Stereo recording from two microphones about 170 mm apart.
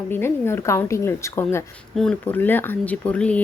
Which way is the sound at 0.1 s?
15° left (ahead or behind).